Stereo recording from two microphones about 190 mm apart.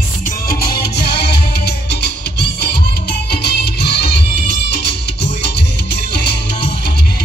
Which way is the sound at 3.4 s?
60° left (ahead or behind).